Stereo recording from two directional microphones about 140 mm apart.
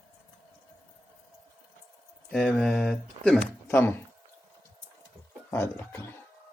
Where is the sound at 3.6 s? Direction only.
15° left (ahead or behind).